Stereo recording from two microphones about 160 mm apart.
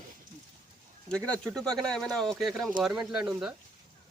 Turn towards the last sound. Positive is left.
turn(degrees=-5)  # may be behind; listen again after turning